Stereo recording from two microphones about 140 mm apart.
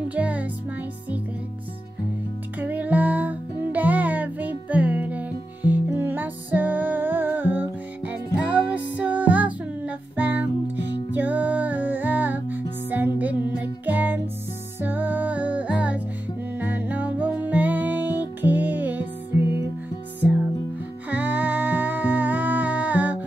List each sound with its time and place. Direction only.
0.1 s music: 10° right (ahead or behind)
2.6 s music: 10° right (ahead or behind)
21.1 s music: 15° right (ahead or behind)